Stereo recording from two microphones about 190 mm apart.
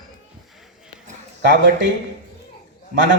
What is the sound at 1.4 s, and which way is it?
Speech, 70° right (ahead or behind).